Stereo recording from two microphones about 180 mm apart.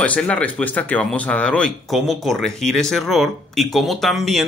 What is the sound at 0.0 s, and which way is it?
A man's voice, 5° left (ahead or behind).